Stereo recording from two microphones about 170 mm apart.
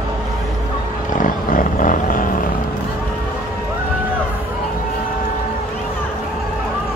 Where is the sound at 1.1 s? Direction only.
55° left (ahead or behind).